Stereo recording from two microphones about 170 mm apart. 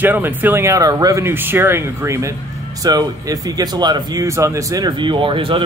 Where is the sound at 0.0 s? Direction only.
10° right (ahead or behind).